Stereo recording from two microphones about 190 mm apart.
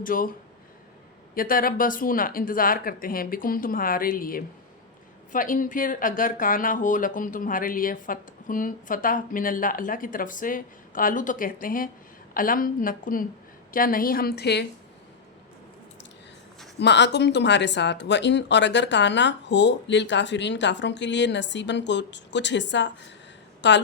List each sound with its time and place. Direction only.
0.0 s speech: 45° left (ahead or behind)
1.4 s speech: 50° left (ahead or behind)
16.7 s speech: 65° left (ahead or behind)